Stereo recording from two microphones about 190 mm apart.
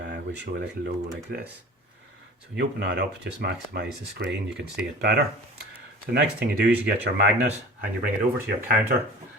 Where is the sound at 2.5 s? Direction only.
65° right (ahead or behind).